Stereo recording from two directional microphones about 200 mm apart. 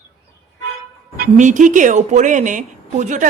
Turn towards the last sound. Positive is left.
turn(degrees=-40)  # may be behind; listen again after turning